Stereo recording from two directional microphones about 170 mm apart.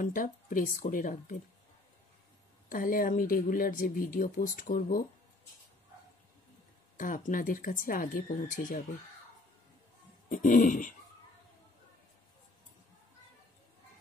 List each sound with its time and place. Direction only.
0.0 s speech: 50° left (ahead or behind)
2.7 s speech: 55° left (ahead or behind)
7.0 s speech: 50° left (ahead or behind)
10.3 s speech: 50° left (ahead or behind)